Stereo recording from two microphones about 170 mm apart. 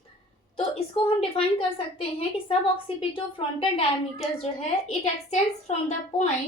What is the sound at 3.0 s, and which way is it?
A woman's voice, 30° left (ahead or behind).